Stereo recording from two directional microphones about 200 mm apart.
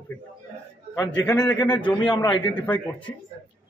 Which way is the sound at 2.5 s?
10° left (ahead or behind).